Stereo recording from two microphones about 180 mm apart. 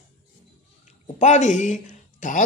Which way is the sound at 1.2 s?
40° left (ahead or behind).